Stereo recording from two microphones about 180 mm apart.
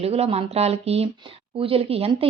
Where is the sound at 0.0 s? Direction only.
35° right (ahead or behind).